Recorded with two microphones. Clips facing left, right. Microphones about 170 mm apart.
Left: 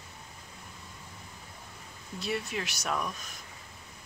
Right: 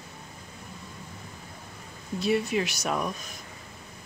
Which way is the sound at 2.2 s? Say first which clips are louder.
Right 8 dB; 5° right (ahead or behind).